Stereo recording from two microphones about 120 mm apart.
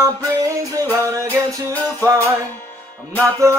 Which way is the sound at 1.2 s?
15° left (ahead or behind).